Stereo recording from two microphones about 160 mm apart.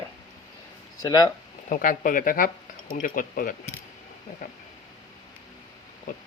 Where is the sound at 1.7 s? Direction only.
60° left (ahead or behind).